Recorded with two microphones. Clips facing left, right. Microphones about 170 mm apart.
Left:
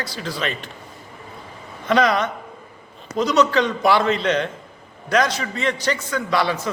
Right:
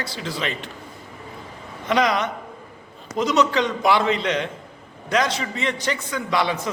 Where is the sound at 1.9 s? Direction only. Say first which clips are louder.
Left 2 dB; 15° right (ahead or behind).